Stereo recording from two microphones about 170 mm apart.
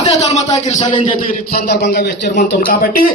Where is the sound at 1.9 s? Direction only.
55° left (ahead or behind).